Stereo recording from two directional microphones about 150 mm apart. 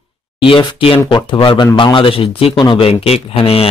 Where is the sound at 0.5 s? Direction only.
35° left (ahead or behind).